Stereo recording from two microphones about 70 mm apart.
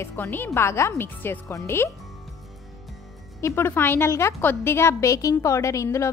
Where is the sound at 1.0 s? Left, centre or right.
Left.